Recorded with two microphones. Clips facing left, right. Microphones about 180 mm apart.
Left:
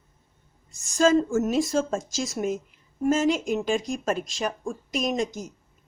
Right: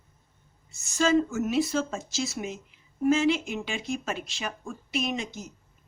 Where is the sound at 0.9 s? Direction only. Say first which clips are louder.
Left 4 dB; 45° left (ahead or behind).